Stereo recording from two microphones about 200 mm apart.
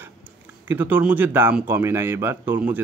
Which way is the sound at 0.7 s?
10° right (ahead or behind).